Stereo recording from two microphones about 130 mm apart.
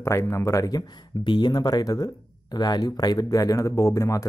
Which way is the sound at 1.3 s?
35° left (ahead or behind).